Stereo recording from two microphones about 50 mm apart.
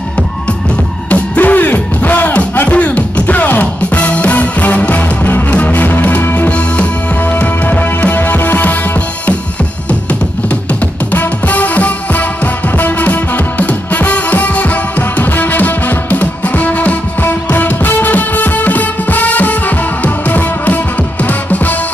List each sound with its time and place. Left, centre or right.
1.1 s music: left
5.2 s music: left
11.1 s music: left